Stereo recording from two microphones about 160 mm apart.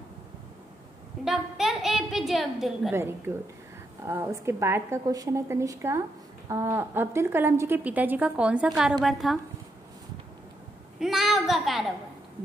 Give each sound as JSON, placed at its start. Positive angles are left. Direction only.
{"t": 1.2, "sound": "a sound", "side_deg": 0}
{"t": 2.9, "sound": "a woman's voice", "side_deg": -15}
{"t": 11.0, "sound": "a child's voice", "side_deg": 0}